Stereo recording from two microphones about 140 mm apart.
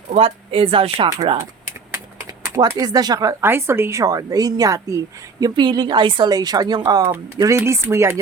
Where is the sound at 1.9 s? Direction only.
20° right (ahead or behind).